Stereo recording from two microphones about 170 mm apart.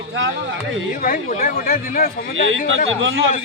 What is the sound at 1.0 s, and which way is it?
A man's voice, 50° left (ahead or behind).